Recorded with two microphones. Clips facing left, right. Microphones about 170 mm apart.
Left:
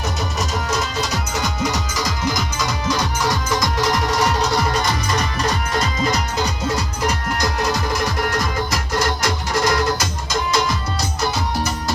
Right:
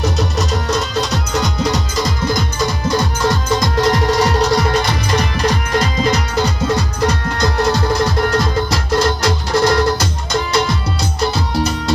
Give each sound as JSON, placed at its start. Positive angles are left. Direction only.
{"t": 0.2, "sound": "music", "side_deg": -65}